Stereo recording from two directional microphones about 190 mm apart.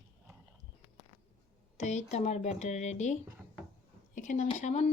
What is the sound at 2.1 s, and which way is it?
Speech, 35° left (ahead or behind).